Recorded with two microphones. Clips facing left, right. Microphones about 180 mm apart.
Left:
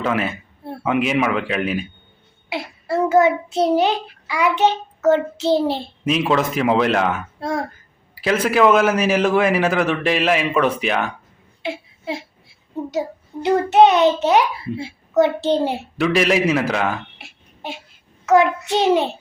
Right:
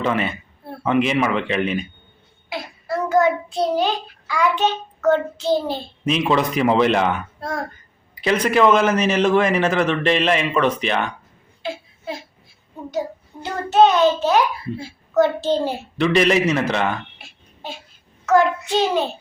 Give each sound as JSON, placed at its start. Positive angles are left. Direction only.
{"t": 0.0, "sound": "speech", "side_deg": 5}
{"t": 2.9, "sound": "a child's voice", "side_deg": 25}
{"t": 6.1, "sound": "speech", "side_deg": 5}
{"t": 7.3, "sound": "speech", "side_deg": 25}
{"t": 8.1, "sound": "a man's voice", "side_deg": 5}
{"t": 12.7, "sound": "child singing", "side_deg": 25}
{"t": 13.4, "sound": "a child's voice", "side_deg": 20}
{"t": 16.0, "sound": "speech", "side_deg": 5}
{"t": 18.3, "sound": "a child's voice", "side_deg": 20}